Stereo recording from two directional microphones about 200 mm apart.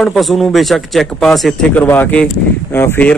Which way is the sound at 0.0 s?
Centre (ahead or behind).